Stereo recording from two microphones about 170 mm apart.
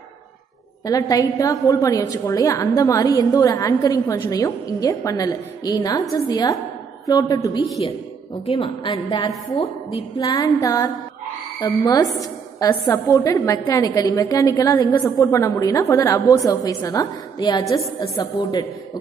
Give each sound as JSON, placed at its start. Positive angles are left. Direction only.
{"t": 0.8, "sound": "a woman's voice", "side_deg": 20}